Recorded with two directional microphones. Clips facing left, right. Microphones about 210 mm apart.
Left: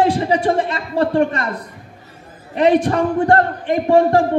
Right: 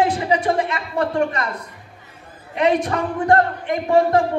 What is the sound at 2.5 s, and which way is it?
A man's voice, 35° left (ahead or behind).